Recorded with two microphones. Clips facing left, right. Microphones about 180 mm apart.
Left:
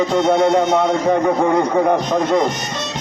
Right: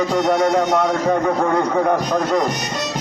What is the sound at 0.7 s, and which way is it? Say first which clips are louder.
Speech: left 2 dB; 20° left (ahead or behind).